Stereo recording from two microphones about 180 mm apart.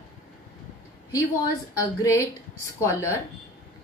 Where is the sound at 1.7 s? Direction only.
20° left (ahead or behind).